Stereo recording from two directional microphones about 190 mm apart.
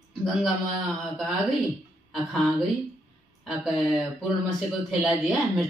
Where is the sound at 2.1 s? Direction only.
Centre (ahead or behind).